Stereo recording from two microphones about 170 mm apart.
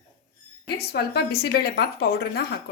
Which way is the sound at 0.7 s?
70° left (ahead or behind).